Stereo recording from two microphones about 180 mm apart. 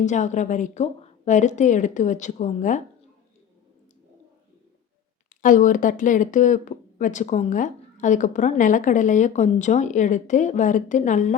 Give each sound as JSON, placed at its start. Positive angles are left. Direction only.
{"t": 0.0, "sound": "speech", "side_deg": 40}
{"t": 5.4, "sound": "speech", "side_deg": 45}